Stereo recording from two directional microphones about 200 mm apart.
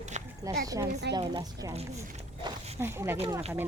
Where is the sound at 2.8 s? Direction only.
10° right (ahead or behind).